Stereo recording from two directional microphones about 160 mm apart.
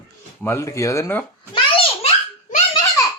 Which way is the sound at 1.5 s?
35° left (ahead or behind).